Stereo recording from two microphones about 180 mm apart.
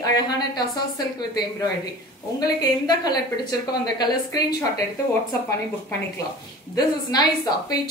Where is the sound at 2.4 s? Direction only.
20° left (ahead or behind).